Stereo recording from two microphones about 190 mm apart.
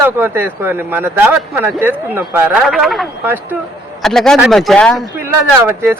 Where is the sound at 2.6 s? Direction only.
Centre (ahead or behind).